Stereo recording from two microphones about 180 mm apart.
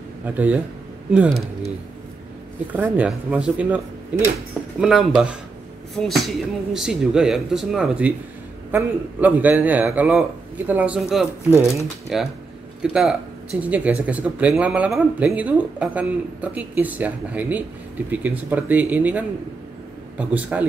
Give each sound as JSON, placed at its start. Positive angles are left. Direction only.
{"t": 0.2, "sound": "speech", "side_deg": -10}
{"t": 2.7, "sound": "speech", "side_deg": -10}